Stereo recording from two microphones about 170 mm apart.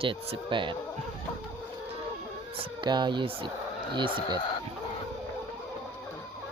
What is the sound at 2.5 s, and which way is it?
Speech, 30° right (ahead or behind).